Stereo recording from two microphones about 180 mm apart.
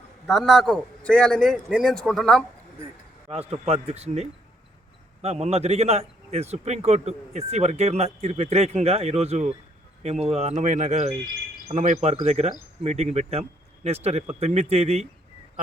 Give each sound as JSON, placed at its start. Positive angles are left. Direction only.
{"t": 0.3, "sound": "a man's voice", "side_deg": 0}
{"t": 3.2, "sound": "a man's voice", "side_deg": -35}